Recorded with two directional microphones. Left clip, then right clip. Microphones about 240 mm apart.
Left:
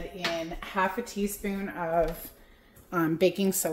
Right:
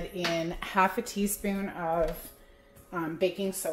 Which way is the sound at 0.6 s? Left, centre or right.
Right.